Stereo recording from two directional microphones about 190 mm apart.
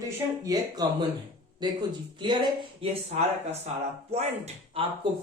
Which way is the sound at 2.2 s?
25° right (ahead or behind).